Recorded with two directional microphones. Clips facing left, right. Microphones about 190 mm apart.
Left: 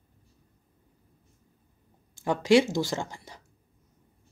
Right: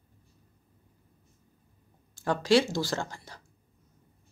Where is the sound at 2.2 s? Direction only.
20° left (ahead or behind).